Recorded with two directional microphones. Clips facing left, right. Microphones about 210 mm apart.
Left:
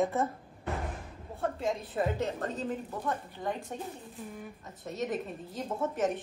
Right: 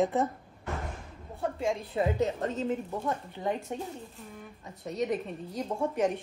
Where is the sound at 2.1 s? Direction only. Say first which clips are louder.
Right 4 dB; 20° right (ahead or behind).